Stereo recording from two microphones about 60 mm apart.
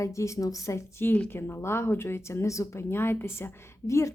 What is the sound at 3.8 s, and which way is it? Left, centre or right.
Speech, left.